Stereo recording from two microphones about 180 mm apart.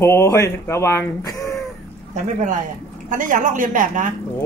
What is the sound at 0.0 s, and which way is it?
Speech, 15° left (ahead or behind).